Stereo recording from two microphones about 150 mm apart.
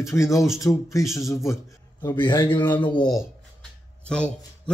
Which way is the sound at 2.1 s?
30° left (ahead or behind).